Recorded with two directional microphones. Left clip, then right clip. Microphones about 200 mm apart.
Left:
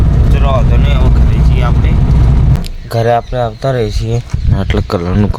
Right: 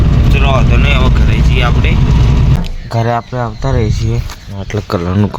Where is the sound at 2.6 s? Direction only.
10° left (ahead or behind).